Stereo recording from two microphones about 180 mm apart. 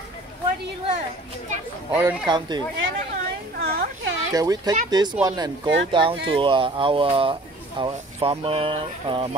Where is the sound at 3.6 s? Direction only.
65° right (ahead or behind).